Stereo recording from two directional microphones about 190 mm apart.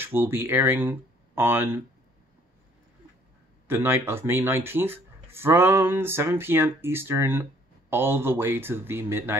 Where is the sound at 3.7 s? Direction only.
10° right (ahead or behind).